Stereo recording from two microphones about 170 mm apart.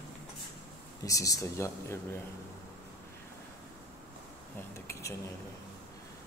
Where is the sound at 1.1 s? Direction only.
20° left (ahead or behind).